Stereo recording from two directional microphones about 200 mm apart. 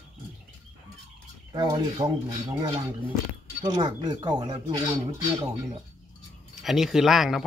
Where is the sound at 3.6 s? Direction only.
20° right (ahead or behind).